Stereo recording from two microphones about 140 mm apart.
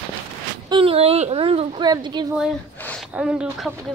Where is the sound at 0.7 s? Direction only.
40° right (ahead or behind).